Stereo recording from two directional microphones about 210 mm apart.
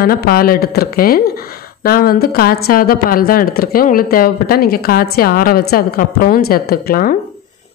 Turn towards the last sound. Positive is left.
turn(degrees=45)  # may be behind; listen again after turning